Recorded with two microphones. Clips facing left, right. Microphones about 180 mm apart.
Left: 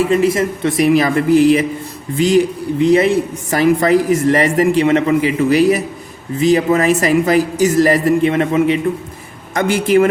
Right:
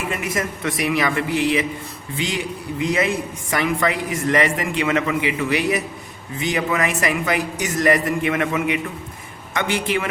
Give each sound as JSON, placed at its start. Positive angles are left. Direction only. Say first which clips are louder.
{"t": 0.1, "sound": "a man's voice", "louder": "left 11 dB", "side_deg": 30}
{"t": 9.6, "sound": "a man's voice", "louder": "left 10 dB", "side_deg": 40}